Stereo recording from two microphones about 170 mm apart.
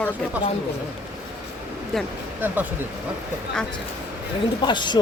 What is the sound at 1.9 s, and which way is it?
Speech, 5° left (ahead or behind).